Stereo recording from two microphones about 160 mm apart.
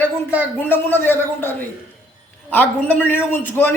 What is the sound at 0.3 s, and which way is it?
Speech, 10° left (ahead or behind).